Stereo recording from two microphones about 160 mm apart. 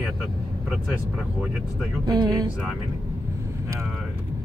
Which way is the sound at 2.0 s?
25° right (ahead or behind).